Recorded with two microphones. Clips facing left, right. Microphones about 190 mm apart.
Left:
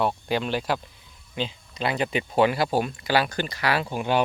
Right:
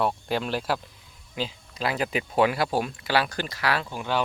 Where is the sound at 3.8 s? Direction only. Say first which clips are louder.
Left 4 dB; 15° left (ahead or behind).